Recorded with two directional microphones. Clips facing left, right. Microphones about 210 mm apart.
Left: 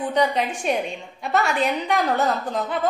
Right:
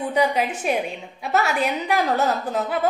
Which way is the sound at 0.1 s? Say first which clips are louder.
Right 1 dB; 5° right (ahead or behind).